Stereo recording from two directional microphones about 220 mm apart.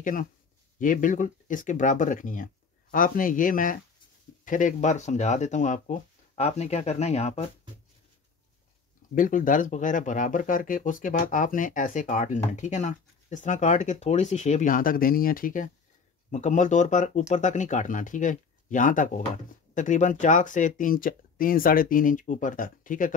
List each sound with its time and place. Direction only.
0.0 s speech: 35° left (ahead or behind)
9.1 s speech: 40° left (ahead or behind)